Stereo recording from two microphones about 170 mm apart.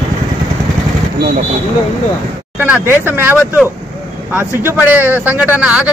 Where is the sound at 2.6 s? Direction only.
10° right (ahead or behind).